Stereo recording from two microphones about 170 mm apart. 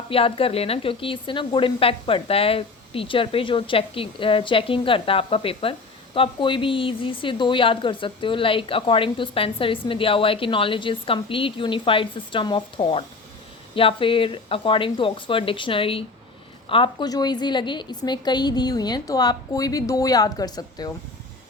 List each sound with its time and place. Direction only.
0.1 s a woman's voice: 35° left (ahead or behind)